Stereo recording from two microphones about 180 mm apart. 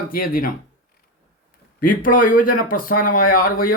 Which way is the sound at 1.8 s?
50° left (ahead or behind).